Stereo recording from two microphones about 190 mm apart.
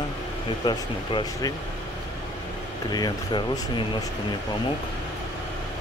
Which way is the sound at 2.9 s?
20° left (ahead or behind).